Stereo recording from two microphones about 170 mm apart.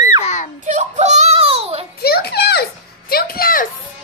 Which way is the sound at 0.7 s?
45° right (ahead or behind).